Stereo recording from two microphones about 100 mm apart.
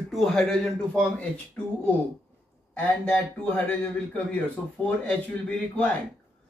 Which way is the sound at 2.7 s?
20° left (ahead or behind).